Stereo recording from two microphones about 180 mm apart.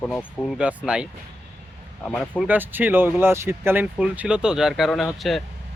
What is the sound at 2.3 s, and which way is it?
Speech, 10° right (ahead or behind).